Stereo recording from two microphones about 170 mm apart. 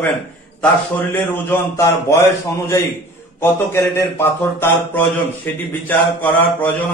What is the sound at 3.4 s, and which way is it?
Speech, 15° left (ahead or behind).